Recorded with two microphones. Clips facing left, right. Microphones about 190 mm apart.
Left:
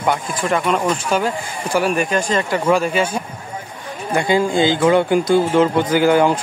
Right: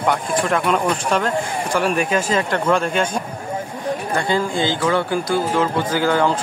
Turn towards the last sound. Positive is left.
turn(degrees=15)  # may be behind; listen again after turning